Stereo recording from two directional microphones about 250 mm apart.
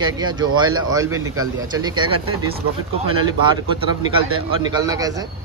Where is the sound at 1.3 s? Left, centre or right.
Right.